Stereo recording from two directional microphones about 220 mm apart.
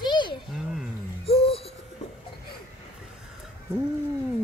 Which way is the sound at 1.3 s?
25° left (ahead or behind).